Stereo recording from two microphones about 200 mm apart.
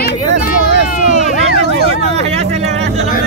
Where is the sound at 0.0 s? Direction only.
45° left (ahead or behind).